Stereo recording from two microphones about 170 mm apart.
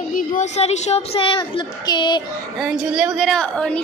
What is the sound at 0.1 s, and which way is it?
Speech, 50° left (ahead or behind).